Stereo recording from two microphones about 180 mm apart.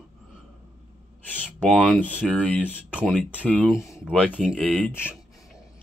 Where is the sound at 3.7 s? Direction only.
15° left (ahead or behind).